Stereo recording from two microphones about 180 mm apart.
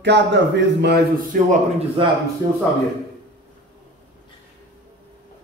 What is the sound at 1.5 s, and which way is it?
Speech, 30° right (ahead or behind).